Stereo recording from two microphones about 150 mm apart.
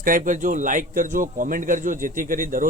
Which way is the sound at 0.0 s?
65° right (ahead or behind).